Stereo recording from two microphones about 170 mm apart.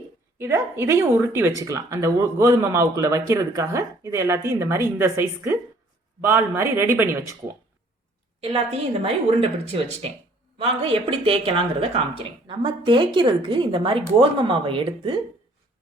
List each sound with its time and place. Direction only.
0.3 s speech: 15° right (ahead or behind)
8.4 s speech: 35° right (ahead or behind)